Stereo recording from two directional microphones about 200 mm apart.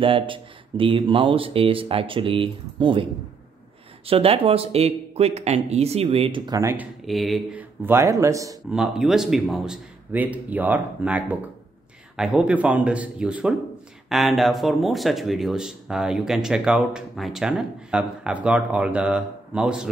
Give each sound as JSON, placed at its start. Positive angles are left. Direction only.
{"t": 0.0, "sound": "speech", "side_deg": -25}
{"t": 7.1, "sound": "speech", "side_deg": 0}
{"t": 8.6, "sound": "speech", "side_deg": 0}